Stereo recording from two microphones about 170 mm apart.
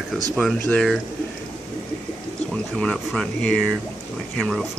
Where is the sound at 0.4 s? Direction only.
5° left (ahead or behind).